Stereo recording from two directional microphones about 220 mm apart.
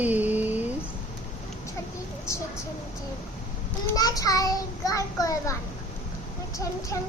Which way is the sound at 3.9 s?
15° left (ahead or behind).